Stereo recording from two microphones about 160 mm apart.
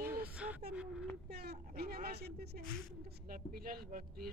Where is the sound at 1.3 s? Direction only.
75° right (ahead or behind).